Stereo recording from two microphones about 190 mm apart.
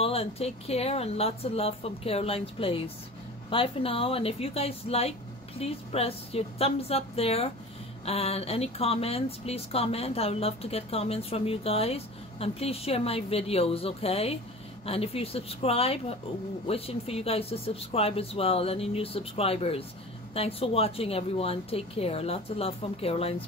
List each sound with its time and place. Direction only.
0.0 s speech: 30° left (ahead or behind)